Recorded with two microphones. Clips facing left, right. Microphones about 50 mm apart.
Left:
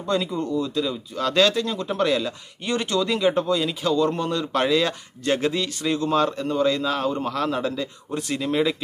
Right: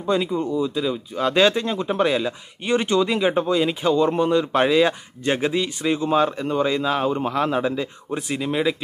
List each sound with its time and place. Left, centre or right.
0.0 s speech: centre